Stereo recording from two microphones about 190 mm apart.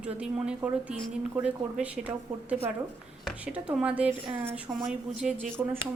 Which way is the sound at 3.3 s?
5° right (ahead or behind).